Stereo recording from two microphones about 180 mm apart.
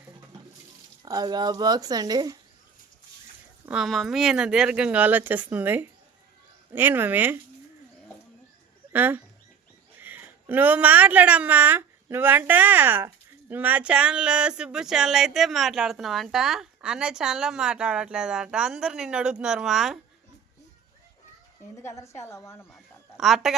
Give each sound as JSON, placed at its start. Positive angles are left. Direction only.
{"t": 1.0, "sound": "speech", "side_deg": -20}
{"t": 3.7, "sound": "speech", "side_deg": 0}
{"t": 8.9, "sound": "speech", "side_deg": -10}
{"t": 21.8, "sound": "a woman's voice", "side_deg": 15}
{"t": 23.1, "sound": "a woman's voice", "side_deg": 0}